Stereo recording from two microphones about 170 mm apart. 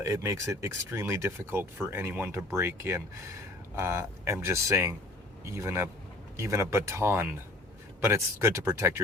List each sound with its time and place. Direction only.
0.0 s speech: 15° right (ahead or behind)